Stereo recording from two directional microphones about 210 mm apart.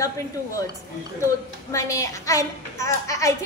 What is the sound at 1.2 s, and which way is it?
A woman's voice, 15° left (ahead or behind).